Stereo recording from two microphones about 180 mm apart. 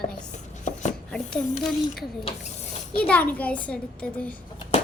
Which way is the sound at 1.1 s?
5° left (ahead or behind).